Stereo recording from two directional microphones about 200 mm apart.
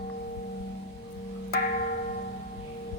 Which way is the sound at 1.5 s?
45° left (ahead or behind).